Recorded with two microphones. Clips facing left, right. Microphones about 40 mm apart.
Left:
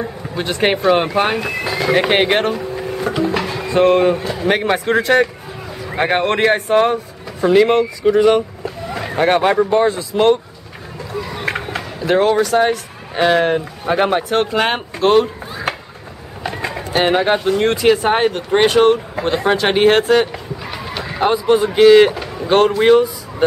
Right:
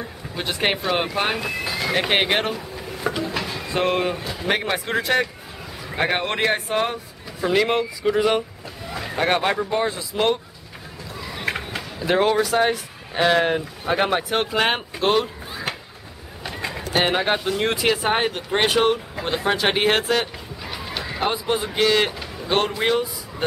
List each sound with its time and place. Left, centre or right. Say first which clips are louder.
0.4 s speech: left 6 dB; centre
1.4 s speech: left 6 dB; left; by 2.5 s centre
3.3 s music: left 7 dB; left
3.7 s speech: left 9 dB; centre
8.9 s speech: left 6 dB; centre
11.1 s a sound: left 5 dB; centre
12.0 s speech: left 5 dB; centre
16.6 s bird: left 3 dB; centre
17.0 s speech: left 7 dB; centre
20.6 s a sound: left 2 dB; centre
21.6 s speech: left 12 dB; centre
22.1 s speech: left 8 dB; left
22.5 s speech: left 9 dB; centre